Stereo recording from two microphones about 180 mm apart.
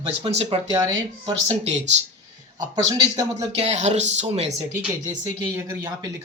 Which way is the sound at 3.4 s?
40° right (ahead or behind).